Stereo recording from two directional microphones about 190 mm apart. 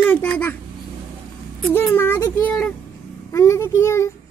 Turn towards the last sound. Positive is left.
turn(degrees=15)  # may be behind; listen again after turning